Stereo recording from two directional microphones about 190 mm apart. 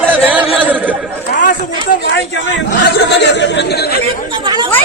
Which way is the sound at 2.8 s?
65° left (ahead or behind).